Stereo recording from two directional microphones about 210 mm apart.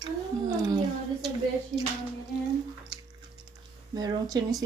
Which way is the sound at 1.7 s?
40° right (ahead or behind).